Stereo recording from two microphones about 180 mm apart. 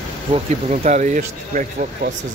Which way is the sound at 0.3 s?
40° right (ahead or behind).